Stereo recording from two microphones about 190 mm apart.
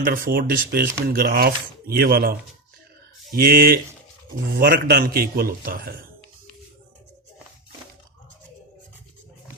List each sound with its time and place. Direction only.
0.0 s speech: 50° right (ahead or behind)
3.3 s speech: 50° right (ahead or behind)